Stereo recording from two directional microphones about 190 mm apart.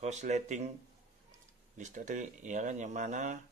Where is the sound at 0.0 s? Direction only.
35° right (ahead or behind).